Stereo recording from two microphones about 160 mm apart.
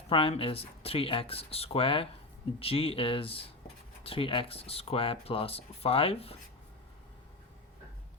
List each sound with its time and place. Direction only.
0.1 s speech: 35° left (ahead or behind)